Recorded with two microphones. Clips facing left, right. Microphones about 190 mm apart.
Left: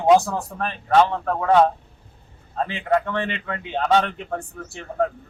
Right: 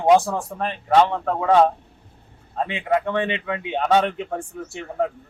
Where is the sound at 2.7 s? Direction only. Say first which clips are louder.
Even; 15° right (ahead or behind).